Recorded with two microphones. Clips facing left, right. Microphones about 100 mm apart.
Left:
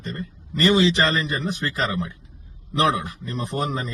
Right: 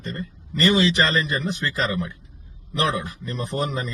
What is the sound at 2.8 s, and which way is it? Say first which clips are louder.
Speech: left 3 dB; 15° left (ahead or behind).